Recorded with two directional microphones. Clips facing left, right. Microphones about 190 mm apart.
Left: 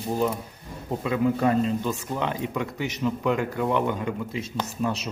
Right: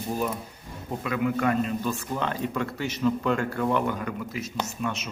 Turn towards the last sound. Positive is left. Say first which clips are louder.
# left 3 dB
turn(degrees=35)  # may be behind; listen again after turning